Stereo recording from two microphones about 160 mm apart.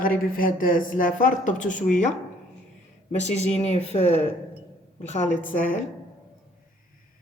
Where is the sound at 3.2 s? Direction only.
45° left (ahead or behind).